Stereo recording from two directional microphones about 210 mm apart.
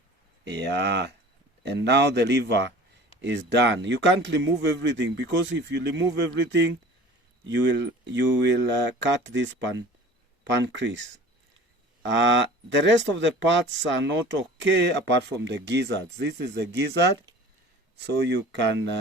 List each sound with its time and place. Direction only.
0.4 s speech: 55° right (ahead or behind)
12.0 s speech: 60° right (ahead or behind)